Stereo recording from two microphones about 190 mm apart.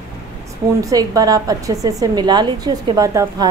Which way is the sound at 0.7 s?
20° right (ahead or behind).